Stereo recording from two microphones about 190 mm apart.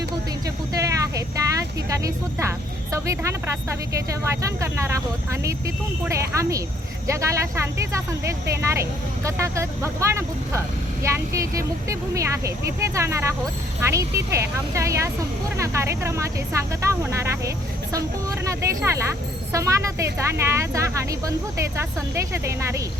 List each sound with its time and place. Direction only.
0.7 s speech: 15° right (ahead or behind)